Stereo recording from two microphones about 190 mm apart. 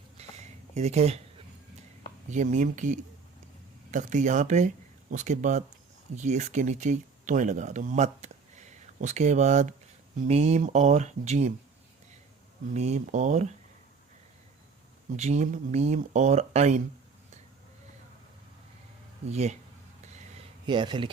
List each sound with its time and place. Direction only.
0.2 s a sound: 35° right (ahead or behind)
2.3 s speech: 40° right (ahead or behind)
12.7 s speech: 35° right (ahead or behind)
15.1 s speech: 35° right (ahead or behind)
19.3 s speech: 35° right (ahead or behind)
20.7 s speech: 25° right (ahead or behind)